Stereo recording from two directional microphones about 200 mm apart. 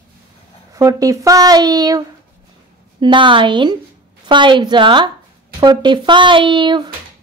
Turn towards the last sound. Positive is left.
turn(degrees=-25)  # may be behind; listen again after turning